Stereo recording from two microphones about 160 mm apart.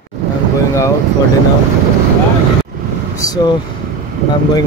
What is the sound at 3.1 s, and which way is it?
Vehicle, 25° left (ahead or behind).